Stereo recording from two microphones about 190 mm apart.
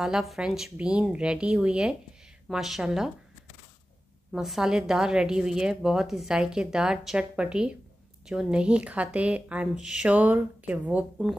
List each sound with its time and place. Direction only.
0.0 s speech: centre (ahead or behind)
4.3 s a woman's voice: centre (ahead or behind)